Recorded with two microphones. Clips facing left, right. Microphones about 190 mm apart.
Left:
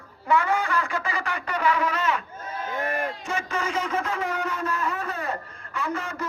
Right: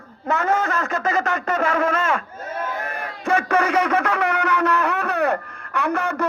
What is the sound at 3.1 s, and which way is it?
Speech, 60° right (ahead or behind).